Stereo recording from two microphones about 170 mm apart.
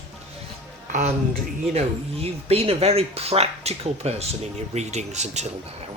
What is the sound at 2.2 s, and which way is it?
Speech, 35° right (ahead or behind).